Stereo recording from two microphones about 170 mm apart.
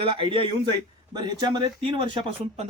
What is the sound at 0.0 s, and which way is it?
Speech, 30° right (ahead or behind).